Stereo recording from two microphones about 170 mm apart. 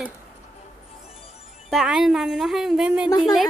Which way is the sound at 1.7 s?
Centre (ahead or behind).